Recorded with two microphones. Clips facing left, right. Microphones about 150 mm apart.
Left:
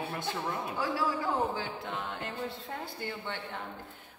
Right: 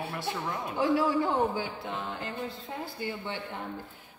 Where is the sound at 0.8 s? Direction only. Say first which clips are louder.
Right 8 dB; 20° right (ahead or behind).